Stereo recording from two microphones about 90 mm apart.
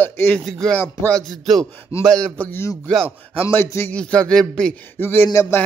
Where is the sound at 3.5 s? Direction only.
25° left (ahead or behind).